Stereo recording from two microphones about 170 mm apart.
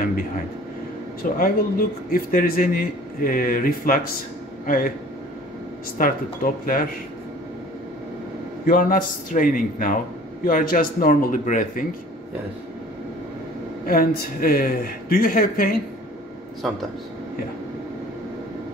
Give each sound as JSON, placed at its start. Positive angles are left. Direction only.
{"t": 1.4, "sound": "a man's voice", "side_deg": 60}
{"t": 6.0, "sound": "speech", "side_deg": 50}
{"t": 8.6, "sound": "a man's voice", "side_deg": 55}
{"t": 13.8, "sound": "a man's voice", "side_deg": 60}